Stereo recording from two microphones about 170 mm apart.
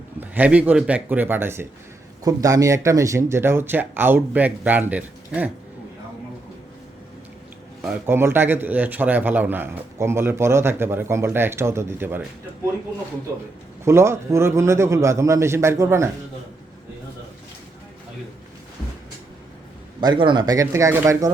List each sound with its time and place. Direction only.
0.2 s speech: 10° right (ahead or behind)
8.0 s speech: 15° right (ahead or behind)
13.8 s speech: 15° right (ahead or behind)
20.0 s speech: 25° right (ahead or behind)